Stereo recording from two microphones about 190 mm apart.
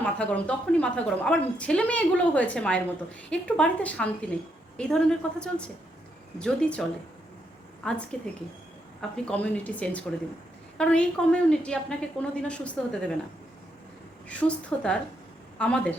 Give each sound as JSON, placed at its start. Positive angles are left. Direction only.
{"t": 0.0, "sound": "a woman's voice", "side_deg": 5}
{"t": 7.8, "sound": "a woman's voice", "side_deg": 5}
{"t": 14.3, "sound": "a woman's voice", "side_deg": 5}